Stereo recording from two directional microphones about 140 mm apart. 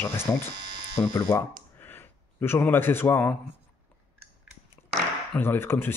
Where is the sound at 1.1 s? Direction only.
15° left (ahead or behind).